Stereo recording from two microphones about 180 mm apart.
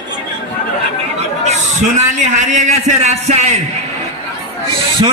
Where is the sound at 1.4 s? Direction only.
40° right (ahead or behind).